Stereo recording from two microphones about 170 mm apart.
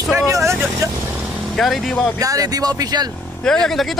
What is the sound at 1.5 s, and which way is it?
Speech, centre (ahead or behind).